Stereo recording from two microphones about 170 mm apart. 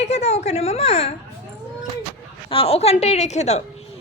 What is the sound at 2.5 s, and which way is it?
A woman's voice, 35° left (ahead or behind).